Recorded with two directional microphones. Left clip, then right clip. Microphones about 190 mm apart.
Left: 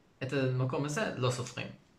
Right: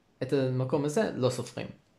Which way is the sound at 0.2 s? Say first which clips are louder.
Right 4 dB; 25° right (ahead or behind).